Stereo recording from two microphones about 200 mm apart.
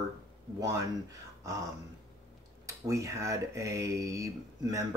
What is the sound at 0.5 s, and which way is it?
Speech, 20° right (ahead or behind).